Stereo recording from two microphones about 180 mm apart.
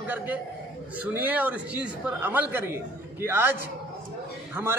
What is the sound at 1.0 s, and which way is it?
A man's voice, 10° right (ahead or behind).